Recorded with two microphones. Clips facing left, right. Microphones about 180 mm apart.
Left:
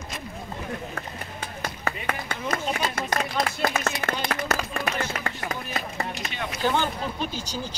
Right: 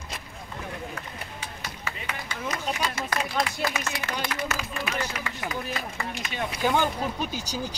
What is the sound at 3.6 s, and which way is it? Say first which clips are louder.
Speech: left 4 dB; 55° left (ahead or behind).